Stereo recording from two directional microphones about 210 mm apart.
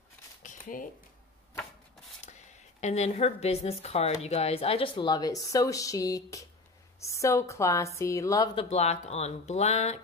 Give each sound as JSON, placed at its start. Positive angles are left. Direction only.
{"t": 0.4, "sound": "shuffling cards", "side_deg": 40}
{"t": 2.2, "sound": "a woman's voice", "side_deg": 35}
{"t": 8.6, "sound": "speech", "side_deg": 30}